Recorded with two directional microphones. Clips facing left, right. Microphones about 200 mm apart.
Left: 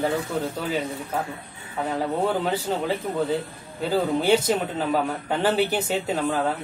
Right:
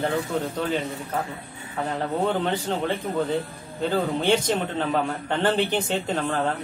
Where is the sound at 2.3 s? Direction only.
5° left (ahead or behind).